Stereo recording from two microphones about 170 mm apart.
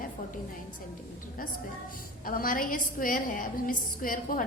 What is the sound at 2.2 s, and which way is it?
A woman's voice, 55° left (ahead or behind).